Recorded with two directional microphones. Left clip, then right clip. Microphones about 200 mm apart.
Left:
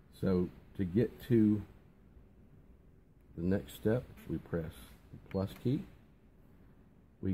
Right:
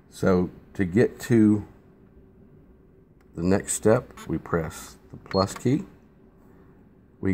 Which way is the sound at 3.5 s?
45° right (ahead or behind).